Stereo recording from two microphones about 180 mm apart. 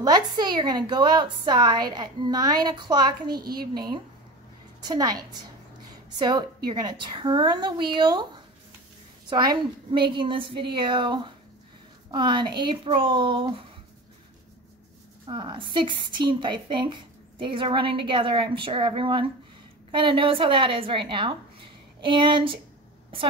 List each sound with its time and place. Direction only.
0.0 s speech: 25° right (ahead or behind)
9.3 s speech: 25° right (ahead or behind)
15.2 s speech: 25° right (ahead or behind)